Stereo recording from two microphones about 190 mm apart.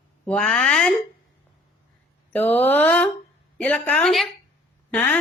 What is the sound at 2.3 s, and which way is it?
A woman's voice, 10° left (ahead or behind).